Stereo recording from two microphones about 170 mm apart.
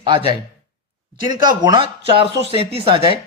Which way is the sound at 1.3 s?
25° right (ahead or behind).